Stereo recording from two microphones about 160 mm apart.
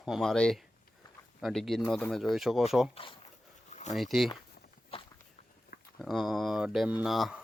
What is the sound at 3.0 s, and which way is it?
Speech, 35° left (ahead or behind).